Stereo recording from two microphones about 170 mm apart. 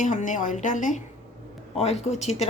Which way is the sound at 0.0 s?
45° left (ahead or behind).